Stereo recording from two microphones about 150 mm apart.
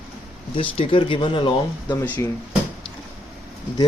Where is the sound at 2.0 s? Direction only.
15° left (ahead or behind).